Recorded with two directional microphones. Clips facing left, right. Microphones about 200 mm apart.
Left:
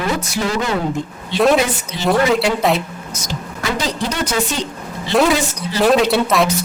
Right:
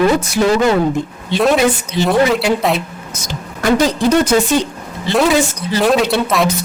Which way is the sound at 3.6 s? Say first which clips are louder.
Right 9 dB; 50° right (ahead or behind).